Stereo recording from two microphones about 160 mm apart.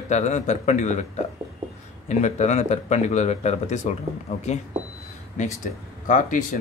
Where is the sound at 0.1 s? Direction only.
45° left (ahead or behind).